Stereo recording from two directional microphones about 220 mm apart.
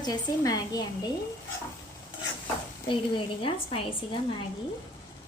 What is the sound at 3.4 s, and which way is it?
Speech, 25° left (ahead or behind).